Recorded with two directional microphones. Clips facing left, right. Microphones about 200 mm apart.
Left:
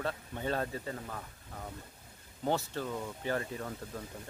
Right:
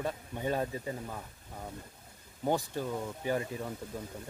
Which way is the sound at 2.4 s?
15° right (ahead or behind).